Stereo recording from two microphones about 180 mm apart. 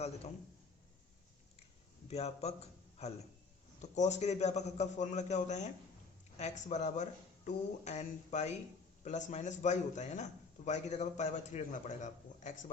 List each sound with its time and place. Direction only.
2.0 s speech: 35° left (ahead or behind)
3.8 s speech: 40° left (ahead or behind)